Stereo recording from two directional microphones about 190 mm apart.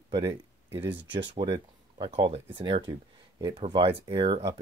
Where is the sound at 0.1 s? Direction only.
30° right (ahead or behind).